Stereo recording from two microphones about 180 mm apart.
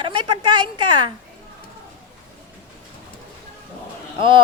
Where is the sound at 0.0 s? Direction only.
25° right (ahead or behind).